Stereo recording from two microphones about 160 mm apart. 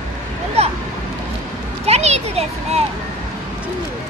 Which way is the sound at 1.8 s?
40° right (ahead or behind).